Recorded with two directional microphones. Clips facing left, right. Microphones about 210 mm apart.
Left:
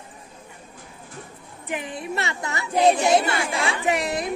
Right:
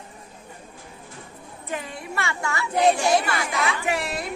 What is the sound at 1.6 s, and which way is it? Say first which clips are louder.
Speech: left 3 dB; 15° left (ahead or behind).